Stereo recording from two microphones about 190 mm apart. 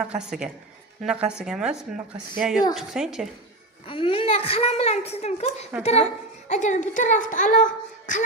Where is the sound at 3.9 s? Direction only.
30° left (ahead or behind).